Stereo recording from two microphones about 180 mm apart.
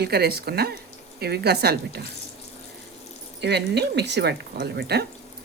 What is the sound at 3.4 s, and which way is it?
Speech, 70° right (ahead or behind).